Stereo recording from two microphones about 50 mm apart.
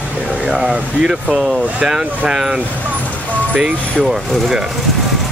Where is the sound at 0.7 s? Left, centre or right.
Centre.